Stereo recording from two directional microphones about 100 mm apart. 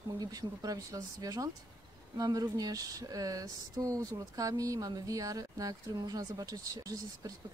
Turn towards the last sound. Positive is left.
turn(degrees=-35)  # may be behind; listen again after turning